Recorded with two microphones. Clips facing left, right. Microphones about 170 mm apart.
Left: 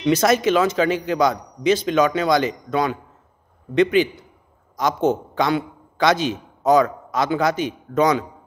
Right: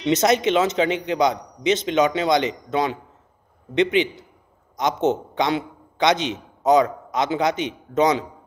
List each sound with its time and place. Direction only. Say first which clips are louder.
0.0 s a man's voice: left 1 dB; 20° right (ahead or behind)